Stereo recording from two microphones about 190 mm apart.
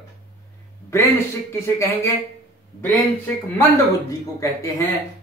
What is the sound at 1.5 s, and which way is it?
Speech, 15° left (ahead or behind).